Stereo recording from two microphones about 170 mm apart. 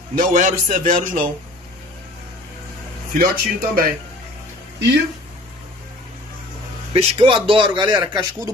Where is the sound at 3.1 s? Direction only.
60° right (ahead or behind).